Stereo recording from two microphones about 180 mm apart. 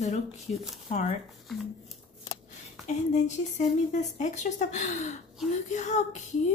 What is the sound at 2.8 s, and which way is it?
A woman's voice, 40° left (ahead or behind).